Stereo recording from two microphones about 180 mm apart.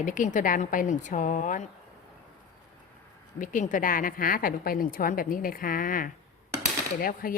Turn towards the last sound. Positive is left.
turn(degrees=55)  # may be behind; listen again after turning